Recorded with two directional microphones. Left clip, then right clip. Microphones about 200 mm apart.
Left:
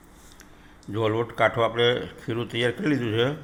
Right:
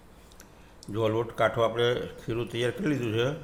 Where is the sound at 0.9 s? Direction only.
Centre (ahead or behind).